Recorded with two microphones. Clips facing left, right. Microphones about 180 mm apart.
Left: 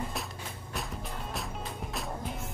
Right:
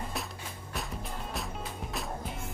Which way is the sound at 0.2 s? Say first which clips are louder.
Even; centre (ahead or behind).